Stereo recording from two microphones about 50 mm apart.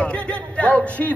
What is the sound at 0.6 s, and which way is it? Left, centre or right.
Speech, left.